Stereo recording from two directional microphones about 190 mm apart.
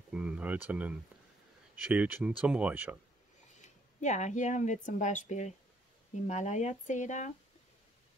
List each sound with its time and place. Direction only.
0.1 s speech: 5° right (ahead or behind)
3.5 s speech: 40° left (ahead or behind)